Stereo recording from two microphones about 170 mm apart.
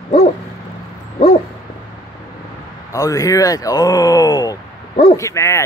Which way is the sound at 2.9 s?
20° left (ahead or behind).